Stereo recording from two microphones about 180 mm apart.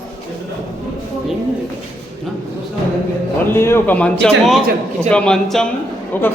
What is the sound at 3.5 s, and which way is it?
A man's voice, 15° left (ahead or behind).